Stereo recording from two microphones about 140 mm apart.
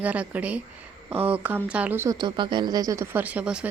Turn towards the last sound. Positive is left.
turn(degrees=-5)  # may be behind; listen again after turning